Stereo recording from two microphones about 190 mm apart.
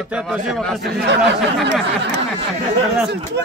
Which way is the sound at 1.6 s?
70° right (ahead or behind).